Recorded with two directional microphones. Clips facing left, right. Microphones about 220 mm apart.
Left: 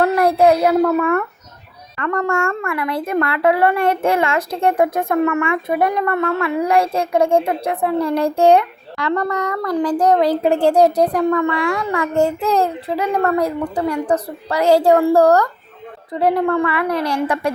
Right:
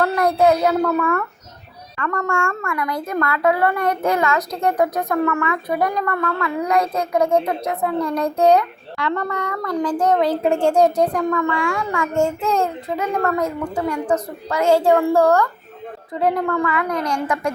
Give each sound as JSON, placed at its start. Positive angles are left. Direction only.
{"t": 0.0, "sound": "speech", "side_deg": 30}
{"t": 2.0, "sound": "a child's voice", "side_deg": 35}